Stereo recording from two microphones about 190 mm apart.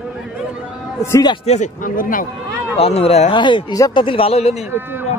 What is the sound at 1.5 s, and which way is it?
Speech, 40° left (ahead or behind).